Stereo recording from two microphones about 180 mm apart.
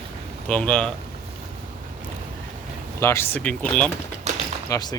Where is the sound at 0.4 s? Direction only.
5° left (ahead or behind).